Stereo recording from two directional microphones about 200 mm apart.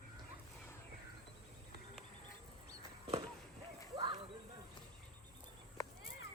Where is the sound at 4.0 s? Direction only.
20° right (ahead or behind).